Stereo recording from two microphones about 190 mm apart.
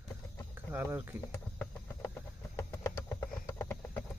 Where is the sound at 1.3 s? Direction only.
10° left (ahead or behind).